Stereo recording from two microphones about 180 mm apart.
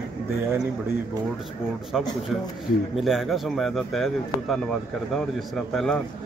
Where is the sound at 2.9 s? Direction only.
Centre (ahead or behind).